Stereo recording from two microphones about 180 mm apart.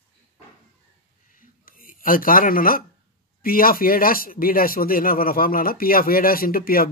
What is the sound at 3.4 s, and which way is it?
Speech, 55° left (ahead or behind).